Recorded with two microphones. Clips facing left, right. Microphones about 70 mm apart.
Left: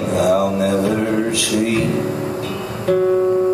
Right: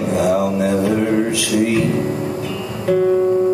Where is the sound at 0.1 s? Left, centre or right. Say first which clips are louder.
Left 1 dB; right.